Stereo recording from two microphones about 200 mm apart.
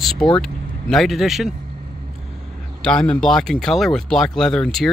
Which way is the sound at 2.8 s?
5° left (ahead or behind).